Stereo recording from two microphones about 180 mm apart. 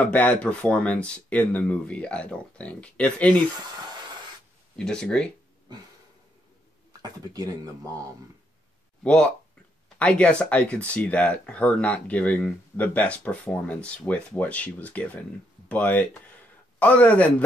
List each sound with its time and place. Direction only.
0.0 s speech: 10° left (ahead or behind)
4.7 s speech: 5° left (ahead or behind)
7.0 s speech: 20° right (ahead or behind)
9.0 s speech: 5° left (ahead or behind)